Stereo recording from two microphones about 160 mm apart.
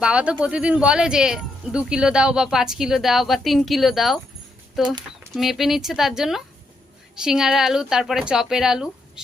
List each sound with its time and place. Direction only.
0.0 s speech: 5° right (ahead or behind)